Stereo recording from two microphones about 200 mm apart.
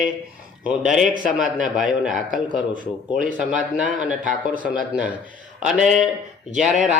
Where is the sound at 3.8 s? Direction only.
40° right (ahead or behind).